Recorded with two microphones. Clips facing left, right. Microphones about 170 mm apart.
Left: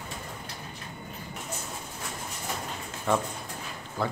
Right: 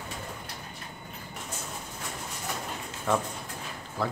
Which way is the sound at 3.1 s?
Centre (ahead or behind).